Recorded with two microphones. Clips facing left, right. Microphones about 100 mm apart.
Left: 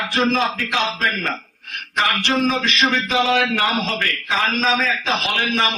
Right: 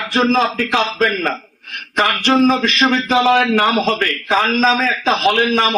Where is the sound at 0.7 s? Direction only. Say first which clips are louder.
Right 5 dB; 45° right (ahead or behind).